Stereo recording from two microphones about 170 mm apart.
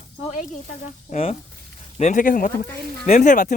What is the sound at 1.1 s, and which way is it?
Speech, 40° left (ahead or behind).